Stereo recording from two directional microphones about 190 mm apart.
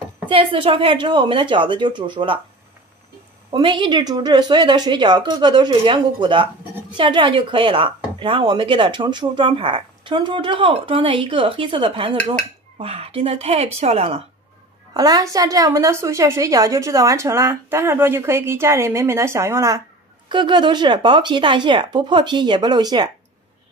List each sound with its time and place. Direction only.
0.3 s speech: 30° right (ahead or behind)
3.5 s speech: 25° right (ahead or behind)
15.0 s a woman's voice: 20° right (ahead or behind)